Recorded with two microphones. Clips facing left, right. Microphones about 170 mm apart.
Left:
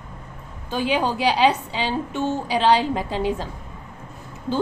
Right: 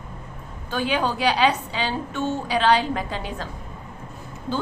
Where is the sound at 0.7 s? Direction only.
25° left (ahead or behind).